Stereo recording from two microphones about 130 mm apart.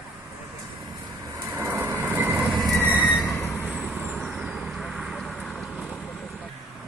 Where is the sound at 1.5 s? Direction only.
15° right (ahead or behind).